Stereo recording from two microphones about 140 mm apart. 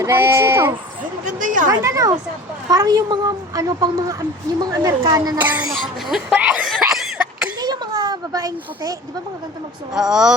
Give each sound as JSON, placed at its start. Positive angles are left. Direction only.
{"t": 0.0, "sound": "speech", "side_deg": -15}
{"t": 1.2, "sound": "speech", "side_deg": -65}
{"t": 1.8, "sound": "a woman's voice", "side_deg": -20}
{"t": 5.4, "sound": "speech", "side_deg": -15}
{"t": 6.7, "sound": "cough", "side_deg": -5}
{"t": 7.6, "sound": "a sound", "side_deg": -30}
{"t": 9.9, "sound": "speech", "side_deg": -5}